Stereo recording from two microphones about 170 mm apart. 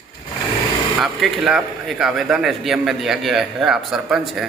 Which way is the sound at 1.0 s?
Centre (ahead or behind).